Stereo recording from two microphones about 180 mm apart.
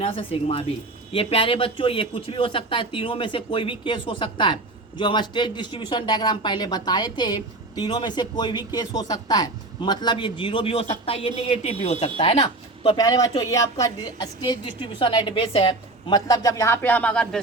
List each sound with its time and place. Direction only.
0.0 s a man's voice: 30° left (ahead or behind)
13.0 s a man's voice: 20° left (ahead or behind)